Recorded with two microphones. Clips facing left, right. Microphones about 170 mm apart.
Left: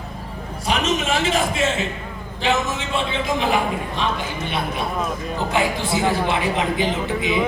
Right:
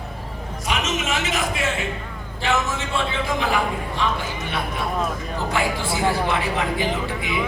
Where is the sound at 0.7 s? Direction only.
35° left (ahead or behind).